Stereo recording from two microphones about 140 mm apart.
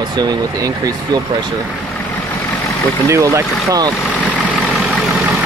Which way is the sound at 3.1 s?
20° right (ahead or behind).